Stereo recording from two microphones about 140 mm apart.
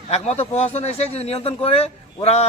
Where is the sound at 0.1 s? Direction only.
50° left (ahead or behind).